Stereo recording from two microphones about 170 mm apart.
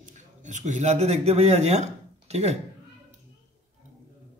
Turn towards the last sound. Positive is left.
turn(degrees=-40)  # may be behind; listen again after turning